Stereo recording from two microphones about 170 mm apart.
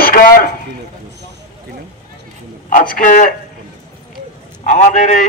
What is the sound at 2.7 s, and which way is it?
Speech, 55° left (ahead or behind).